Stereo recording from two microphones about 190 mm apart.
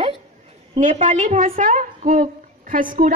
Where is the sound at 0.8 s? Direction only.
40° right (ahead or behind).